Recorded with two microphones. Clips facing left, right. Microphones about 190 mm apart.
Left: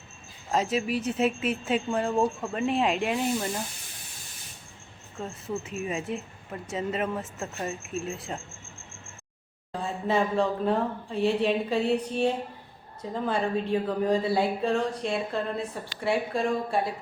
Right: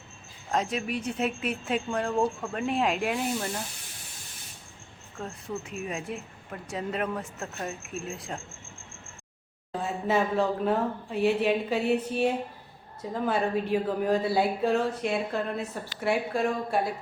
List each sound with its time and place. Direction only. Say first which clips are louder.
0.5 s a woman's voice: left 3 dB; 5° left (ahead or behind)
5.2 s a woman's voice: left 2 dB; centre (ahead or behind)
9.8 s a woman's voice: even; 5° right (ahead or behind)